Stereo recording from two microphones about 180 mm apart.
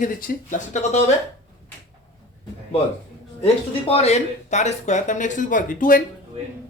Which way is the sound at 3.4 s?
35° left (ahead or behind).